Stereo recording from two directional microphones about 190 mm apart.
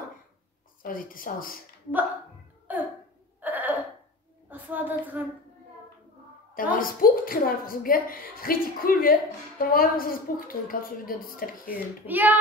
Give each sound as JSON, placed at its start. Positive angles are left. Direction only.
{"t": 0.8, "sound": "a woman's voice", "side_deg": 45}
{"t": 2.7, "sound": "a sound", "side_deg": -10}
{"t": 3.3, "sound": "hiccup", "side_deg": -10}
{"t": 4.5, "sound": "a woman's voice", "side_deg": -10}
{"t": 6.5, "sound": "a woman's voice", "side_deg": 45}
{"t": 12.1, "sound": "hands", "side_deg": -10}